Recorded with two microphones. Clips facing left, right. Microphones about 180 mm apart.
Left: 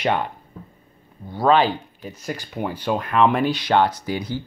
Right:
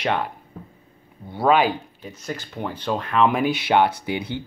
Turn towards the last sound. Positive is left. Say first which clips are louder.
# left 1 dB
turn(degrees=-25)  # may be behind; listen again after turning